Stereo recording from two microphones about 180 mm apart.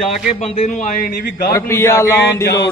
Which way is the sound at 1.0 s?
55° left (ahead or behind).